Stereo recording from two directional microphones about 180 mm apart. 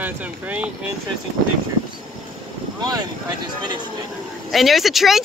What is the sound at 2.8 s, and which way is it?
Speech, 20° right (ahead or behind).